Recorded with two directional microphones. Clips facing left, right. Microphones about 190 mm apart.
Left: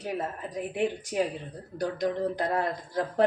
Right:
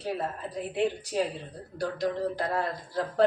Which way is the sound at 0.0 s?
15° left (ahead or behind).